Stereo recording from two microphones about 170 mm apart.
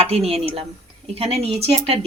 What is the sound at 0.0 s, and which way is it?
A woman's voice, 35° right (ahead or behind).